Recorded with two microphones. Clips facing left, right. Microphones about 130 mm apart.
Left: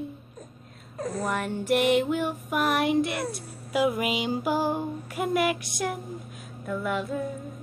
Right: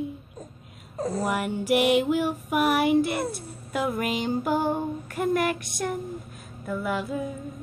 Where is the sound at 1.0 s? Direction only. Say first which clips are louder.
Right 3 dB; 30° right (ahead or behind).